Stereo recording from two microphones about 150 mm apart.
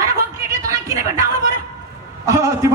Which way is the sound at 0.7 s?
20° right (ahead or behind).